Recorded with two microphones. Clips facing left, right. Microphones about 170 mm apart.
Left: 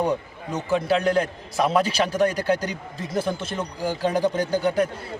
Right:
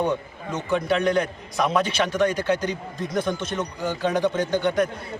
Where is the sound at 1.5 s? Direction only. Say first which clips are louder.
Left 1 dB; 30° left (ahead or behind).